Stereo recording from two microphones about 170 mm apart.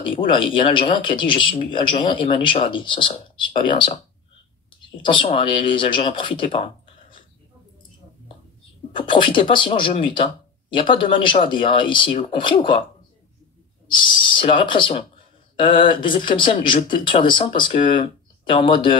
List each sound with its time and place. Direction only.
0.3 s speech: 30° left (ahead or behind)
5.0 s speech: 30° left (ahead or behind)
8.9 s speech: 30° left (ahead or behind)
13.8 s speech: 30° left (ahead or behind)